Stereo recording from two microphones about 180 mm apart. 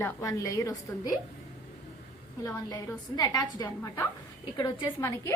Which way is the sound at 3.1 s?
20° left (ahead or behind).